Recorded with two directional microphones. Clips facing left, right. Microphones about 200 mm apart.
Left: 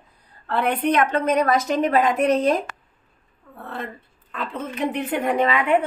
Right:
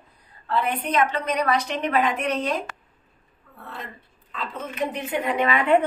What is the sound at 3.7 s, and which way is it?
A woman's voice, 55° left (ahead or behind).